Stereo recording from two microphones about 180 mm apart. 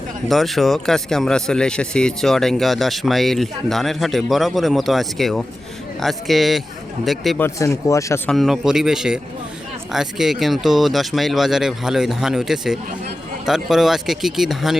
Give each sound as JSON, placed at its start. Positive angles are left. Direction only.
{"t": 0.3, "sound": "speech", "side_deg": 0}
{"t": 7.4, "sound": "speech", "side_deg": 15}
{"t": 8.3, "sound": "speech", "side_deg": 0}